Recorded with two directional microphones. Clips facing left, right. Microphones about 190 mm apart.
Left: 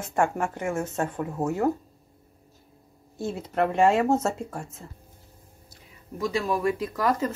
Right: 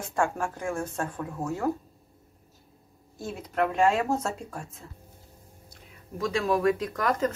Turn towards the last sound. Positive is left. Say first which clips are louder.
# left 1 dB
turn(degrees=5)  # may be behind; listen again after turning